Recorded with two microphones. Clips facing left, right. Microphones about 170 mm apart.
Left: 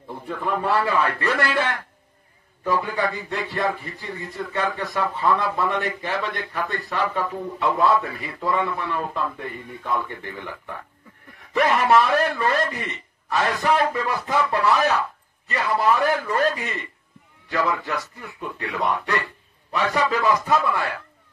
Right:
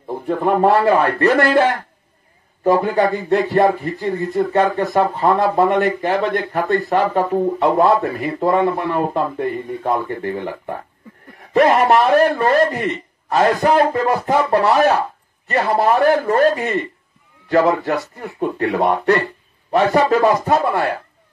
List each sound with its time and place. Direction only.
0.1 s speech: 50° right (ahead or behind)
11.8 s a man's voice: 45° right (ahead or behind)